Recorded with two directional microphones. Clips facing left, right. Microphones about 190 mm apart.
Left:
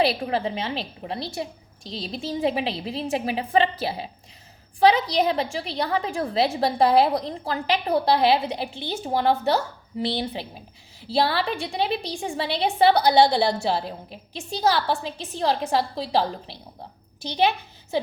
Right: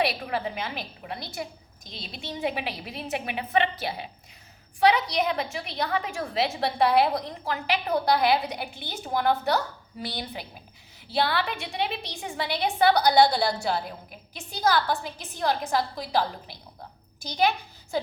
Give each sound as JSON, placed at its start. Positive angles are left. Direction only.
{"t": 0.0, "sound": "a woman's voice", "side_deg": 30}